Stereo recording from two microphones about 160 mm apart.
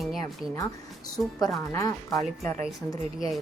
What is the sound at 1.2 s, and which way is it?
Speech, centre (ahead or behind).